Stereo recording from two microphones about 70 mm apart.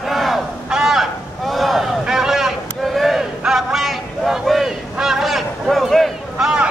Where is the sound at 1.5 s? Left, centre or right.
Centre.